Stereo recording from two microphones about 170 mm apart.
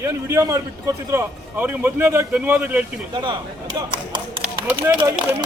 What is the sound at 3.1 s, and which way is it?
A man's voice, 25° right (ahead or behind).